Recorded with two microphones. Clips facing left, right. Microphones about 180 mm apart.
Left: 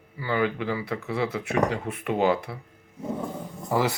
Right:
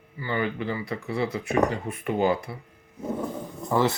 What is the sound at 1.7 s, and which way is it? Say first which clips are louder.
Speech: left 1 dB; 80° left.